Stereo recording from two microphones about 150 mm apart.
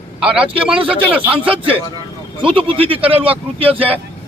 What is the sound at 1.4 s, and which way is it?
Speech, 35° right (ahead or behind).